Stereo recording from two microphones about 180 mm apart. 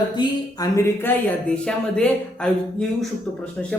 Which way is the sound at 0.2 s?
20° left (ahead or behind).